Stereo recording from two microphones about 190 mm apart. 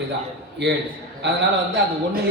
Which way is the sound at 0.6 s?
60° right (ahead or behind).